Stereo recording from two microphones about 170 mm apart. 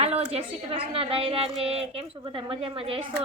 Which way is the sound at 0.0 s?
35° right (ahead or behind).